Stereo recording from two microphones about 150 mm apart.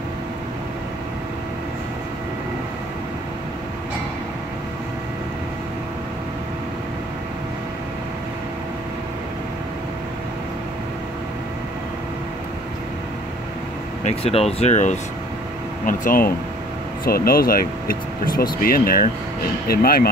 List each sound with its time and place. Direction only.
14.0 s speech: 45° left (ahead or behind)
15.8 s speech: 65° left (ahead or behind)
17.0 s speech: 80° left
19.7 s speech: 85° left